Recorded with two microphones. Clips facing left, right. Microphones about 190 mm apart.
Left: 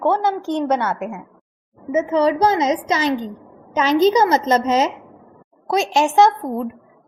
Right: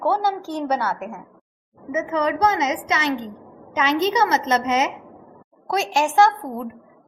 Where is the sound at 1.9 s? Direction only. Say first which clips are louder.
Left 5 dB; 30° left (ahead or behind).